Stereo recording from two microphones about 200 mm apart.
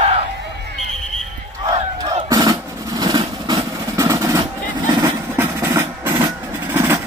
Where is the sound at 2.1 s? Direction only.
25° right (ahead or behind).